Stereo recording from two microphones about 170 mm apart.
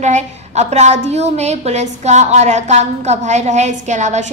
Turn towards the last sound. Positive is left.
turn(degrees=-45)  # may be behind; listen again after turning